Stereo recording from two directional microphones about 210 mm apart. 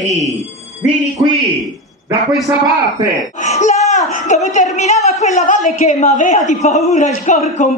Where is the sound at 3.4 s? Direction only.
35° left (ahead or behind).